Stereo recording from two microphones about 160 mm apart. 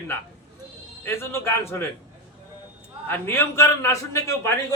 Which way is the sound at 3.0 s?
10° left (ahead or behind).